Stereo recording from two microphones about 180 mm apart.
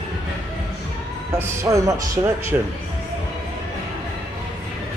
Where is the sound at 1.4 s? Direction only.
15° right (ahead or behind).